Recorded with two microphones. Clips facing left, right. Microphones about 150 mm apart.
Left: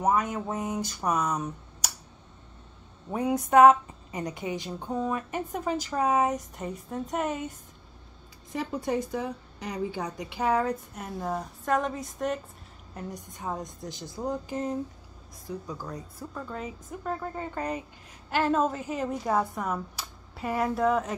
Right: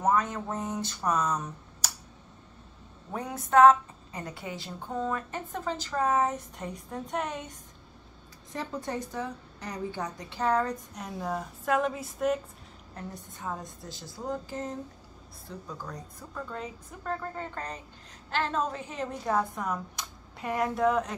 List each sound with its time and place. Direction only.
0.0 s a woman's voice: 10° left (ahead or behind)
3.1 s a woman's voice: 10° left (ahead or behind)
6.5 s a woman's voice: 5° left (ahead or behind)
12.9 s a woman's voice: 20° left (ahead or behind); by 21.2 s centre (ahead or behind)